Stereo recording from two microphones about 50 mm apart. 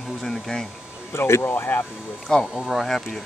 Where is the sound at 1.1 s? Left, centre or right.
Left.